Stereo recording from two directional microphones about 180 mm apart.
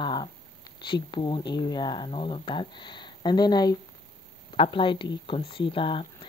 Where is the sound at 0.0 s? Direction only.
25° left (ahead or behind).